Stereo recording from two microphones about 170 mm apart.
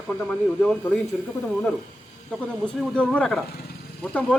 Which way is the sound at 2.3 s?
5° left (ahead or behind).